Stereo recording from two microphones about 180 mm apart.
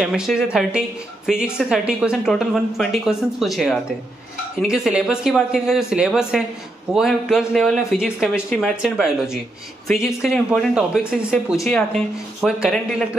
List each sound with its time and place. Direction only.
0.0 s a woman's voice: 5° right (ahead or behind)